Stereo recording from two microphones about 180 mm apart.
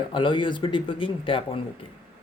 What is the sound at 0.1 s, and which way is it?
Speech, 25° left (ahead or behind).